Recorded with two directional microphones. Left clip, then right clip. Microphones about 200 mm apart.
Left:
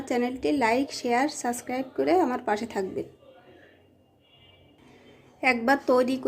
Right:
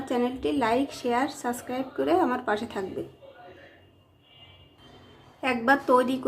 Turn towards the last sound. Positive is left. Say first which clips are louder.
# right 1 dB
turn(degrees=20)  # may be behind; listen again after turning